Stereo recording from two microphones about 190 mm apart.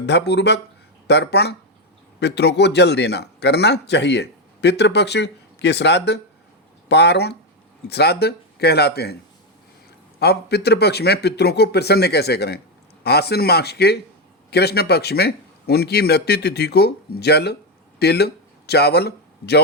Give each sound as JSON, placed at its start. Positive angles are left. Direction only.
{"t": 0.0, "sound": "a man's voice", "side_deg": 65}
{"t": 10.2, "sound": "a man's voice", "side_deg": 60}